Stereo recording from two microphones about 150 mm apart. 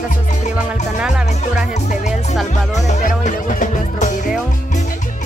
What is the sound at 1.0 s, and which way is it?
Speech, 5° right (ahead or behind).